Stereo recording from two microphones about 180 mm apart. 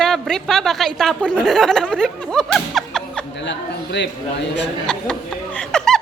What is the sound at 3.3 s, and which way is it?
Speech, 75° left (ahead or behind).